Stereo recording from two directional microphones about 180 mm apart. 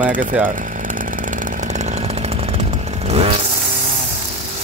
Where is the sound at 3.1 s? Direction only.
35° right (ahead or behind).